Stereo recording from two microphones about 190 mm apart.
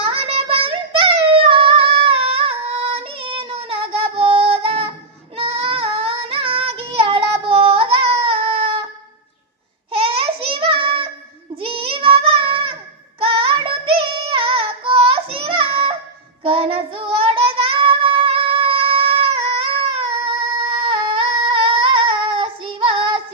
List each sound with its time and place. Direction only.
0.0 s singing: 30° right (ahead or behind)
5.4 s child singing: 30° right (ahead or behind)
8.2 s a sound: 30° right (ahead or behind)
10.0 s child singing: 30° right (ahead or behind)
13.2 s female singing: 30° right (ahead or behind)
16.4 s child singing: 30° right (ahead or behind)
19.7 s singing: 30° right (ahead or behind)